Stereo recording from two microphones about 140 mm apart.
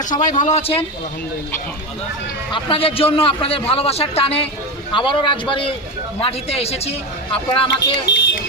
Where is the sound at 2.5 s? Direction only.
40° left (ahead or behind).